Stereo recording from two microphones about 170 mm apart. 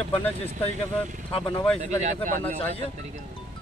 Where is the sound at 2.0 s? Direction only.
45° right (ahead or behind).